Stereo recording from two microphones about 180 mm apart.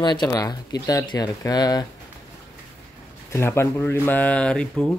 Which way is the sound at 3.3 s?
15° left (ahead or behind).